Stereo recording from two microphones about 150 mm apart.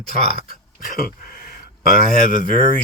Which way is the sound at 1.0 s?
75° left (ahead or behind).